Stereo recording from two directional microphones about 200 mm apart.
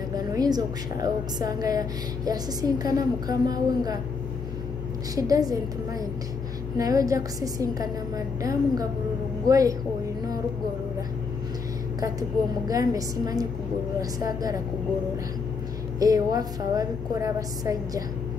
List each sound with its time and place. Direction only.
0.1 s a woman's voice: 20° right (ahead or behind)
5.1 s a woman's voice: 20° right (ahead or behind)
6.8 s a woman's voice: 20° right (ahead or behind)
12.0 s a woman's voice: 15° right (ahead or behind)
16.0 s a woman's voice: 20° right (ahead or behind)